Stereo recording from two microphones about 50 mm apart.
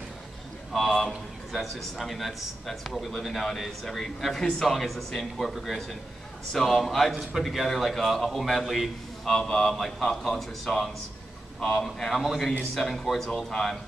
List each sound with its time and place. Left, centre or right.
0.7 s a man's voice: centre
9.2 s a man's voice: centre